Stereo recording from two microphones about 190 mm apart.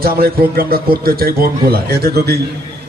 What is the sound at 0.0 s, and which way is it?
A man's voice, 50° right (ahead or behind).